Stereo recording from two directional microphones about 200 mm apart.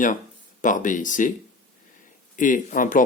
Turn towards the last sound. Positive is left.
turn(degrees=40)  # may be behind; listen again after turning